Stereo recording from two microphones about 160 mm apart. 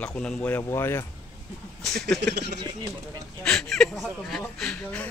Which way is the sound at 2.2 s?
90° right.